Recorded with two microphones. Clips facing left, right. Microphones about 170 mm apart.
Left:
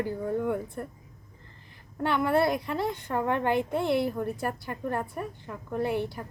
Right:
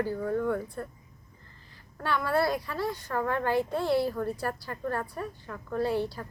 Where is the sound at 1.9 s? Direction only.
20° left (ahead or behind).